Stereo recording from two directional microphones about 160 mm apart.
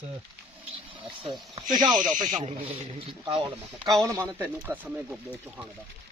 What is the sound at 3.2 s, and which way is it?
Speech, 35° right (ahead or behind).